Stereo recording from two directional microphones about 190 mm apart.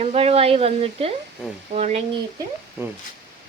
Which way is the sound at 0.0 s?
35° right (ahead or behind).